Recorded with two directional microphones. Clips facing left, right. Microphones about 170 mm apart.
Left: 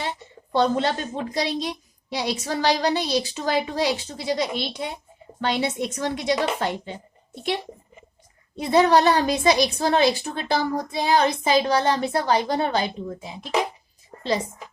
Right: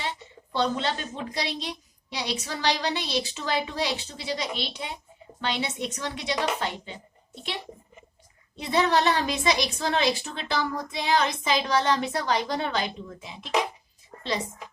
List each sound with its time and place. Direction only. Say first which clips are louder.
0.5 s a woman's voice: left 6 dB; 45° left (ahead or behind)
8.5 s speech: left 6 dB; 45° left (ahead or behind)